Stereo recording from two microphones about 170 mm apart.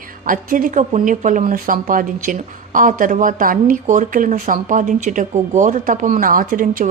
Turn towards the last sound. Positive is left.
turn(degrees=-55)  # may be behind; listen again after turning